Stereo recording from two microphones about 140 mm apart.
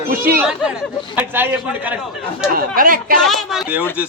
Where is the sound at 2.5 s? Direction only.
85° right.